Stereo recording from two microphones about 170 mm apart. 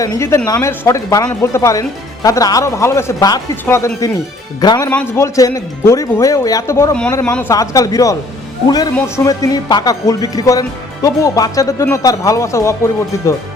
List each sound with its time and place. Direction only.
0.0 s speech: 20° left (ahead or behind)
4.9 s speech: 15° left (ahead or behind)